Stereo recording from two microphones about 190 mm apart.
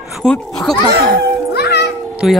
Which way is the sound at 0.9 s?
55° right (ahead or behind).